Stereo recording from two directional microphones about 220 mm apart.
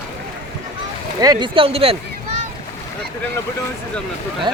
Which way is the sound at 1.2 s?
20° right (ahead or behind).